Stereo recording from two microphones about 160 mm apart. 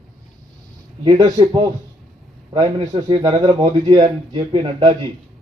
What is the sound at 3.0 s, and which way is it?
A man's voice, 25° right (ahead or behind).